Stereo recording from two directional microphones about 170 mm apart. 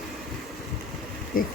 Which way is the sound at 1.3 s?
55° left (ahead or behind).